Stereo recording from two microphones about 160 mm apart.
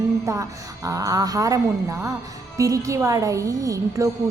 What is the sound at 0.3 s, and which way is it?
A woman's voice, 20° right (ahead or behind).